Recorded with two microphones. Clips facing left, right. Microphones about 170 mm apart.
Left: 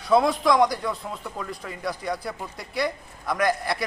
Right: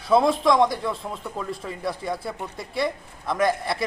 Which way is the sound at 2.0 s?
Centre (ahead or behind).